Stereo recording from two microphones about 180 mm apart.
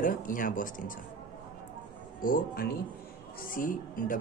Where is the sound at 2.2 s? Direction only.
55° left (ahead or behind).